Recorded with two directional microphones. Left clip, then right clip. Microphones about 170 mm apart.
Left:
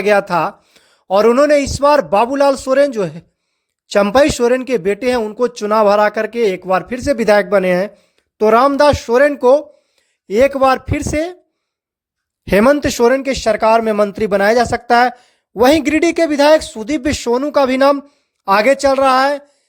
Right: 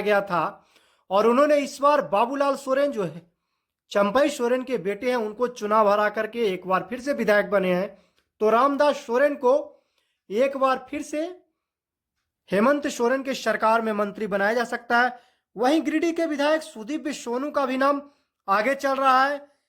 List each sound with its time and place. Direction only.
0.0 s speech: 45° left (ahead or behind)
12.5 s speech: 45° left (ahead or behind)